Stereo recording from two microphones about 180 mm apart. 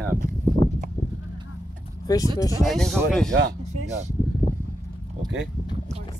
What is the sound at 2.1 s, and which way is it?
Speech, 20° left (ahead or behind).